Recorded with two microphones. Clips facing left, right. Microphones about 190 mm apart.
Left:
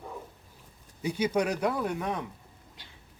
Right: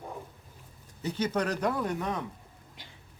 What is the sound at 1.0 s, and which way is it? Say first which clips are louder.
A man's voice: left 2 dB; 10° left (ahead or behind).